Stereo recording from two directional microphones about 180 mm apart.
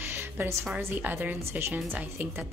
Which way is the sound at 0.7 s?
10° right (ahead or behind).